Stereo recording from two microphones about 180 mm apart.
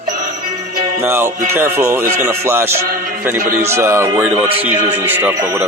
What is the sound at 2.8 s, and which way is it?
Speech, 50° right (ahead or behind).